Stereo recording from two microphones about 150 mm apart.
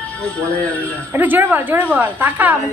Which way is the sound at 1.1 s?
15° right (ahead or behind).